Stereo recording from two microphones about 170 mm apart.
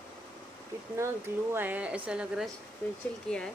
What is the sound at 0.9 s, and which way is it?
Speech, 15° right (ahead or behind).